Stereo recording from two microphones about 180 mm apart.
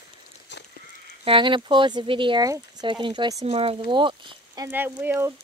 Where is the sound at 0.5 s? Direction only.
75° left (ahead or behind).